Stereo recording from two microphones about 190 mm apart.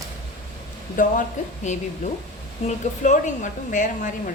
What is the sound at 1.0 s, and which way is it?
A woman's voice, 45° left (ahead or behind).